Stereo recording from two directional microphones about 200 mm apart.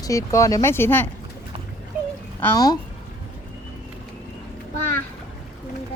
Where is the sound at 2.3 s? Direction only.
15° left (ahead or behind).